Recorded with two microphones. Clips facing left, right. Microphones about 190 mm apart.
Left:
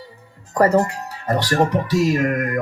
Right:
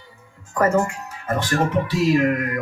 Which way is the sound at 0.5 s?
35° left (ahead or behind).